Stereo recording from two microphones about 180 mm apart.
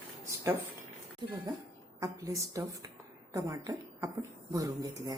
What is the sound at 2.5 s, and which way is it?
Speech, 20° right (ahead or behind).